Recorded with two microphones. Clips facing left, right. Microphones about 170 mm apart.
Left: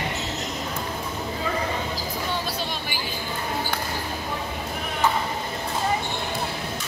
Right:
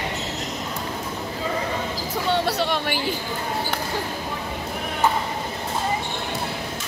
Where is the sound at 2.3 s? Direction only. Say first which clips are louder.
Right 11 dB; 75° right (ahead or behind).